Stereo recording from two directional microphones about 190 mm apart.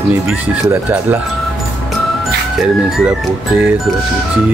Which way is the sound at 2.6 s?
Centre (ahead or behind).